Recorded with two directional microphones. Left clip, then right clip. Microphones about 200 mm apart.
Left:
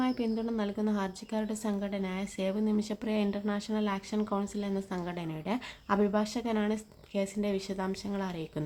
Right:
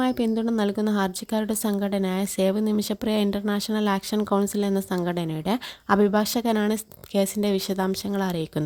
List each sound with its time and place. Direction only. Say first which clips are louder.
0.0 s a woman's voice: right 8 dB; 50° right (ahead or behind)